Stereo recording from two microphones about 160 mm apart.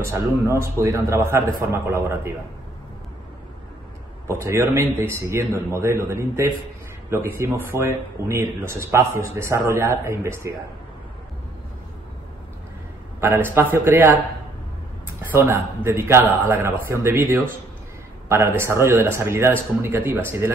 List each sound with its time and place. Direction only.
0.0 s speech: 15° right (ahead or behind)
4.3 s speech: 15° right (ahead or behind)
13.2 s speech: 15° right (ahead or behind)
15.3 s speech: 15° right (ahead or behind)